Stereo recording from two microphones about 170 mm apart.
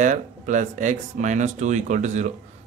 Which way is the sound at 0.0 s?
45° right (ahead or behind).